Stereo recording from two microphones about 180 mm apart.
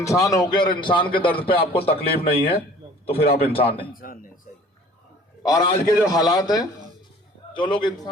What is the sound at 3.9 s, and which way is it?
Speech, 50° left (ahead or behind).